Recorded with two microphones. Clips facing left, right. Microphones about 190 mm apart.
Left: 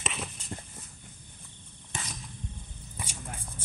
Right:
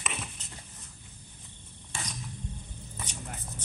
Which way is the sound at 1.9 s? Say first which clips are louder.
Right 1 dB; 20° left (ahead or behind).